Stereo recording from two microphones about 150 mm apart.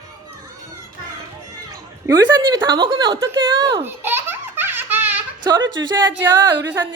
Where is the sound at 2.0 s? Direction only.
25° right (ahead or behind).